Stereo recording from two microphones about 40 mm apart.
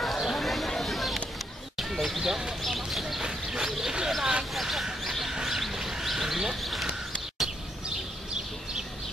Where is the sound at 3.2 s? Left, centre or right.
Centre.